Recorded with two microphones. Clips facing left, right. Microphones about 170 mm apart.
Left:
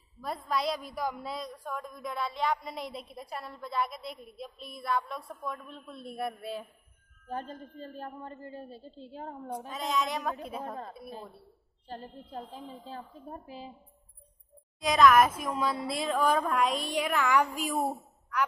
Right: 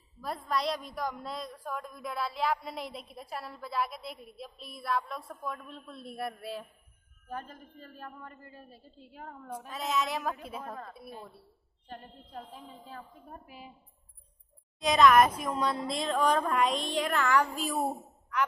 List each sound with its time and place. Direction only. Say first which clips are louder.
0.2 s a woman's voice: left 1 dB; centre (ahead or behind)
7.2 s a woman's voice: left 4 dB; 30° left (ahead or behind)
9.7 s a woman's voice: even; centre (ahead or behind)
11.9 s a woman's voice: left 4 dB; 30° left (ahead or behind)
14.8 s a woman's voice: even; centre (ahead or behind)